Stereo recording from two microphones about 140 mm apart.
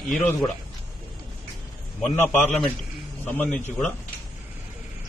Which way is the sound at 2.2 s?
10° left (ahead or behind).